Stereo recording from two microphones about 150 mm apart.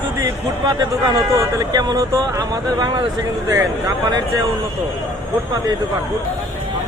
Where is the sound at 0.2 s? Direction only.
25° right (ahead or behind).